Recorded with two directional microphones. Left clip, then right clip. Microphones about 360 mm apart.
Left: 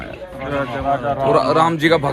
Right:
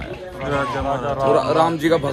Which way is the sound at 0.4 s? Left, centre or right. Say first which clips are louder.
Left 1 dB; centre.